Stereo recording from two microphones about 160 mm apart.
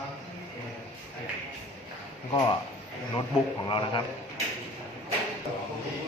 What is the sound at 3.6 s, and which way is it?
Speech, 30° left (ahead or behind).